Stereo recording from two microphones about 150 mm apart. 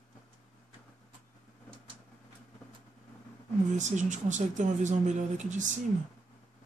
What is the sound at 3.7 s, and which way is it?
Speech, 55° right (ahead or behind).